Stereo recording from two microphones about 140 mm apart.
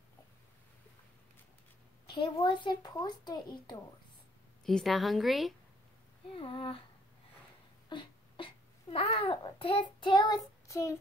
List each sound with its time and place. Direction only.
2.0 s a sound: 35° left (ahead or behind)
2.4 s a child's voice: 30° left (ahead or behind)
4.6 s a woman's voice: centre (ahead or behind)
6.3 s a child's voice: 40° left (ahead or behind)
7.9 s babbling: 35° left (ahead or behind)
10.7 s child singing: 20° left (ahead or behind)